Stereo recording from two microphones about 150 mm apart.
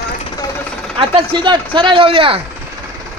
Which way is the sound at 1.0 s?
35° right (ahead or behind).